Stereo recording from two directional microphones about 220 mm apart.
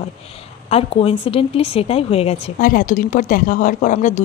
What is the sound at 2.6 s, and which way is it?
Speech, 40° left (ahead or behind).